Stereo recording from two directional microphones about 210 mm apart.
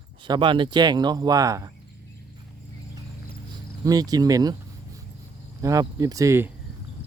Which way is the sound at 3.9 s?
15° right (ahead or behind).